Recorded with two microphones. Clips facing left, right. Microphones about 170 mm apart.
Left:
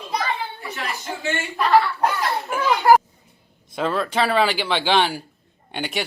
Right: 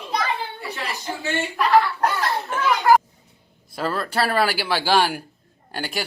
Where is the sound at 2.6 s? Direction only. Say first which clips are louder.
Left 1 dB; 35° left (ahead or behind).